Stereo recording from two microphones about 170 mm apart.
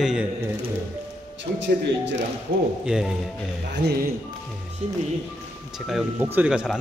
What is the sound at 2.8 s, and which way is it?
Speech, 5° right (ahead or behind).